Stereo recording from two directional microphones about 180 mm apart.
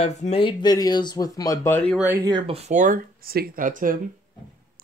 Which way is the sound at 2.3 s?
30° right (ahead or behind).